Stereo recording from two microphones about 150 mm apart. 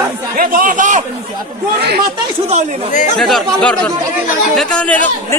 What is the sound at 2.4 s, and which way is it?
Speech, 50° right (ahead or behind).